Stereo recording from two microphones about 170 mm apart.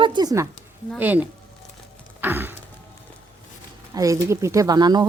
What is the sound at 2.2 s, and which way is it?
Music, 10° right (ahead or behind).